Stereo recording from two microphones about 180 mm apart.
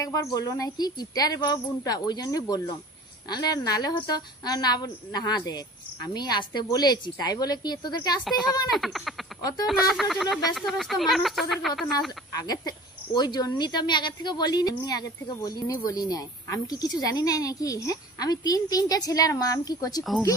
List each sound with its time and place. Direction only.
0.0 s speech: 20° left (ahead or behind)
8.3 s speech: centre (ahead or behind)
9.4 s speech: 20° left (ahead or behind)
9.7 s speech: centre (ahead or behind)
12.3 s speech: 20° left (ahead or behind)